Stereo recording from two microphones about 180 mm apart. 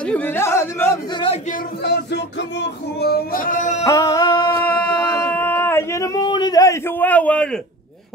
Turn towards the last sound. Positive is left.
turn(degrees=5)  # may be behind; listen again after turning